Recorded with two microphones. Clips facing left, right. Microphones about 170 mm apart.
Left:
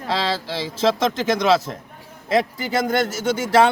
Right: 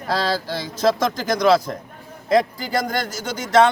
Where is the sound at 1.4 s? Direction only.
5° left (ahead or behind).